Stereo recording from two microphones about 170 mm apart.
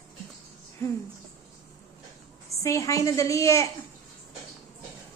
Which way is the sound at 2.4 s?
20° left (ahead or behind).